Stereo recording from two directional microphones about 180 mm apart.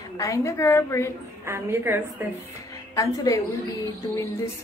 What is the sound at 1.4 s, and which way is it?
Music, 15° right (ahead or behind).